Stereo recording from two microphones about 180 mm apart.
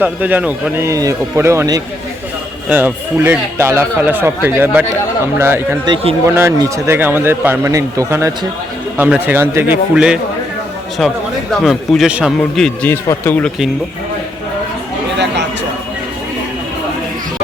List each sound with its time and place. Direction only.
0.0 s speech: 10° right (ahead or behind)
5.8 s speech: 30° right (ahead or behind)
6.2 s speech: 15° right (ahead or behind); by 13.5 s 10° left (ahead or behind)